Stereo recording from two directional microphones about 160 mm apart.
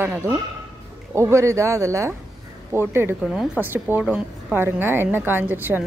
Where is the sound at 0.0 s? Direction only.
15° right (ahead or behind).